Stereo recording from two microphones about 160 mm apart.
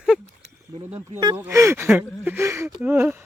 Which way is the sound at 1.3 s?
15° right (ahead or behind).